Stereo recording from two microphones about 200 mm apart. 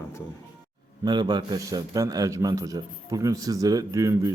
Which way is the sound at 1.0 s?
20° right (ahead or behind).